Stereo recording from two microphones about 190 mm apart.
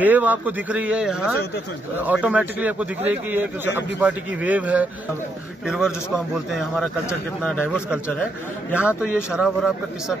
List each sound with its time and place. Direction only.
0.0 s a man's voice: 10° right (ahead or behind)